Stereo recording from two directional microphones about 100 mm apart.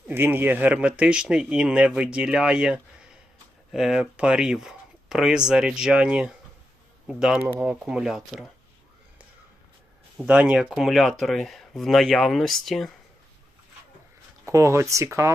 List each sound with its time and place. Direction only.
0.1 s speech: 20° right (ahead or behind); by 8.4 s 5° right (ahead or behind)
10.2 s speech: 15° right (ahead or behind)
10.6 s speech: centre (ahead or behind)
14.4 s speech: 30° right (ahead or behind)